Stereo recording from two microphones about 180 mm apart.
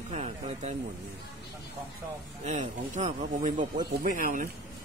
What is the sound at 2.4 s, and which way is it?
Speech, 40° right (ahead or behind).